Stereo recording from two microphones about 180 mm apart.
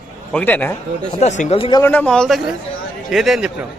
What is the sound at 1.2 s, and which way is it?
Speech, 40° left (ahead or behind).